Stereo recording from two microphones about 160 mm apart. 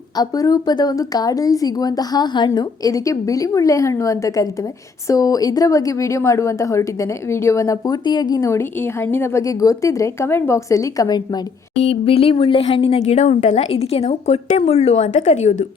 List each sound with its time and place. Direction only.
0.2 s a woman's voice: 20° left (ahead or behind)
11.8 s speech: 35° left (ahead or behind)